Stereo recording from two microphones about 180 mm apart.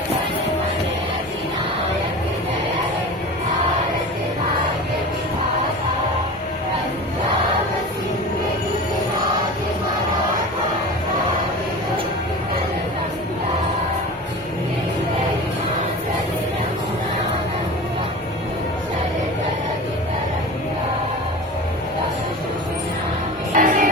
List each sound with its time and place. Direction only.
23.6 s music: 50° right (ahead or behind)